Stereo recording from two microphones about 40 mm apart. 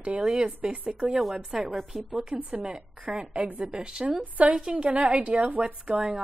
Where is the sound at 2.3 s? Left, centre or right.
Right.